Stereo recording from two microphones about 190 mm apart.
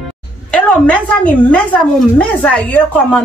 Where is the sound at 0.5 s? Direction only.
5° left (ahead or behind).